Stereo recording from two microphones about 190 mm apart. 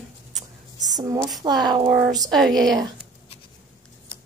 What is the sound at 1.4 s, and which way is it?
Speech, 20° right (ahead or behind).